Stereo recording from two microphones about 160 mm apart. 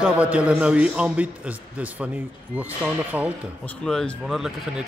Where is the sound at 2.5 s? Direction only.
10° right (ahead or behind).